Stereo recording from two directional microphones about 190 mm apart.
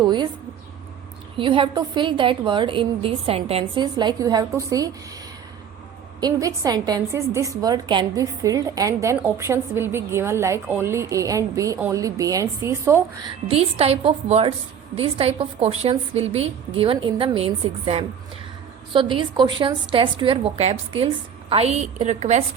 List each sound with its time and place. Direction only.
0.0 s a woman's voice: 25° right (ahead or behind)
1.4 s a woman's voice: 25° right (ahead or behind)
6.1 s a woman's voice: 20° right (ahead or behind)
13.5 s a woman's voice: 30° right (ahead or behind)